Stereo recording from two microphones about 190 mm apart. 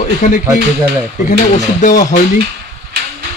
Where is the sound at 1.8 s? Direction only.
45° left (ahead or behind).